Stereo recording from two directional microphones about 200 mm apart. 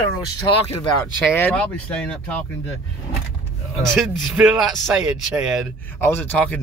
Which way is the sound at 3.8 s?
Centre (ahead or behind).